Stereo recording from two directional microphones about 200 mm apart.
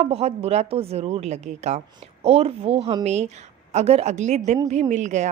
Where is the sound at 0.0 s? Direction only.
30° right (ahead or behind).